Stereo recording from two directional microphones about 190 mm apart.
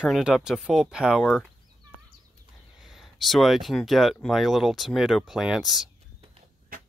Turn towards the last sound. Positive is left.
turn(degrees=0)  # may be behind; listen again after turning